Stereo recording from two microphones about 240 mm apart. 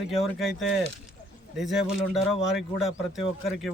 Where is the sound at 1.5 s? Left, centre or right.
Centre.